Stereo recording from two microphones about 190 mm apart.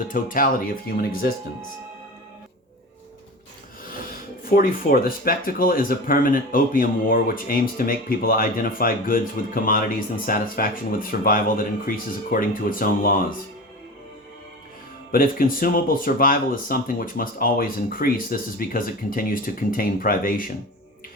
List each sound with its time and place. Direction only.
0.1 s speech: 45° left (ahead or behind)
4.1 s speech: 50° left (ahead or behind)
15.1 s speech: 50° left (ahead or behind)